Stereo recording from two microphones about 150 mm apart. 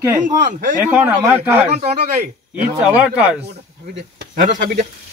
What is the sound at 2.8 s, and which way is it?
Speech, 10° right (ahead or behind).